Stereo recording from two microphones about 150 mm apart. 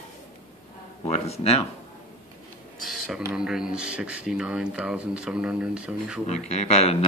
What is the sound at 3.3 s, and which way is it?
Speech, 5° right (ahead or behind).